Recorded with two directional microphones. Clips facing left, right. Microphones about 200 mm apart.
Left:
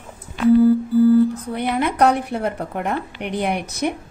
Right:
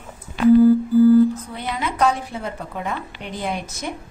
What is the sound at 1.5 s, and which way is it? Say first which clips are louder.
A woman's voice: left 6 dB; 60° left (ahead or behind).